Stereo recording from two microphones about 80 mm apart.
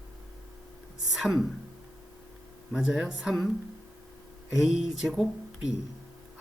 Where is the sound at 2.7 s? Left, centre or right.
Centre.